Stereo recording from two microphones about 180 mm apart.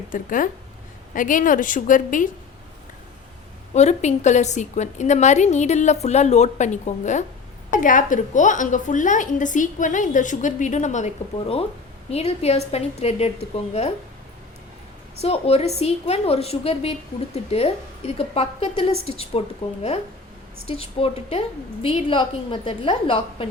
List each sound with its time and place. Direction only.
0.1 s a woman's voice: 50° left (ahead or behind)
3.8 s a woman's voice: 40° left (ahead or behind)
15.2 s a woman's voice: 35° left (ahead or behind)
20.7 s a woman's voice: 35° left (ahead or behind)